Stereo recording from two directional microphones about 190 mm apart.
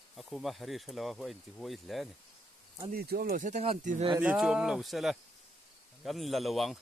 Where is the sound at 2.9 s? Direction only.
55° right (ahead or behind); by 4.1 s 30° right (ahead or behind).